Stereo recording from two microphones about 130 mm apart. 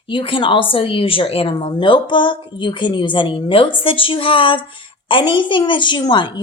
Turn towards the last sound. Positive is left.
turn(degrees=35)  # may be behind; listen again after turning